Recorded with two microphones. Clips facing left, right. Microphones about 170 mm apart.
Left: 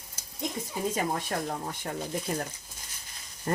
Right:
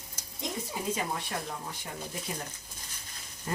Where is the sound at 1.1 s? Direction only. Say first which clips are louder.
Left 5 dB; 45° left (ahead or behind).